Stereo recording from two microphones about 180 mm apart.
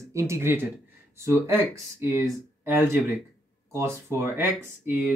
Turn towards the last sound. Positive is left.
turn(degrees=-10)  # may be behind; listen again after turning